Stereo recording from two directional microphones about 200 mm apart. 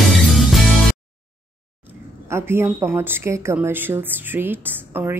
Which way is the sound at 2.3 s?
10° right (ahead or behind).